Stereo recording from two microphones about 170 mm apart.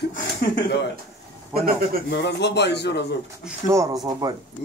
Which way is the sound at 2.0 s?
85° left.